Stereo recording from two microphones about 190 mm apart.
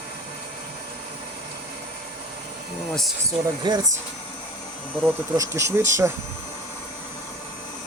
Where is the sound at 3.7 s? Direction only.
20° right (ahead or behind).